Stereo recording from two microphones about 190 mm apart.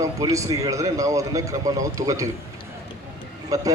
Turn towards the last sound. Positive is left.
turn(degrees=-20)  # may be behind; listen again after turning